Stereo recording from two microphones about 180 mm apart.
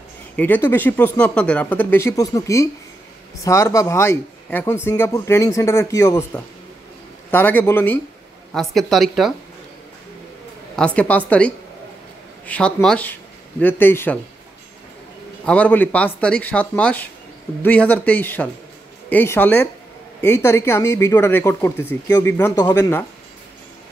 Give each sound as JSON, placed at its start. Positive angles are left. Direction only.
{"t": 0.4, "sound": "a woman's voice", "side_deg": 10}
{"t": 10.8, "sound": "speech", "side_deg": 5}
{"t": 15.4, "sound": "speech", "side_deg": 5}